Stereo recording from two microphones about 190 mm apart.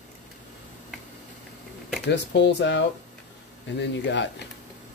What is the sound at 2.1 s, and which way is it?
Speech, 65° left (ahead or behind).